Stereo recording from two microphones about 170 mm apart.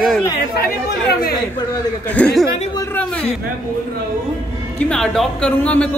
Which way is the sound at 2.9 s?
10° left (ahead or behind).